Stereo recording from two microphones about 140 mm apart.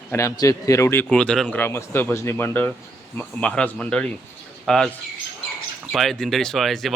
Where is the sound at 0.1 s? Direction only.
20° left (ahead or behind).